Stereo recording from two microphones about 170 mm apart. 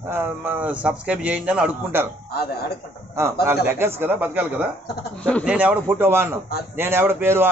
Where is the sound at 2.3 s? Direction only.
70° left (ahead or behind).